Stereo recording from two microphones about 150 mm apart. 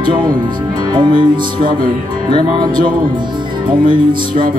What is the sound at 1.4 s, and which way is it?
Music, 70° right (ahead or behind).